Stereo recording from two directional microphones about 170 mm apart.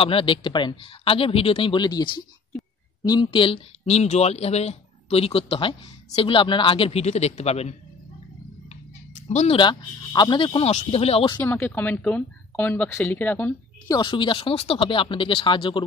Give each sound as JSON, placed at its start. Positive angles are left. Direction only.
{"t": 0.0, "sound": "speech", "side_deg": 30}
{"t": 9.3, "sound": "speech", "side_deg": 40}
{"t": 9.6, "sound": "speech", "side_deg": 25}
{"t": 11.3, "sound": "speech", "side_deg": 10}
{"t": 13.9, "sound": "speech", "side_deg": 30}